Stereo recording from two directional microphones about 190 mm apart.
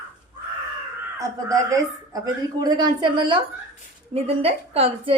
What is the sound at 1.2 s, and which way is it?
A woman's voice, 20° right (ahead or behind).